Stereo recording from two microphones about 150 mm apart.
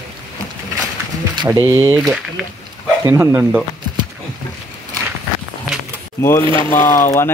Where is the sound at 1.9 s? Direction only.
5° right (ahead or behind).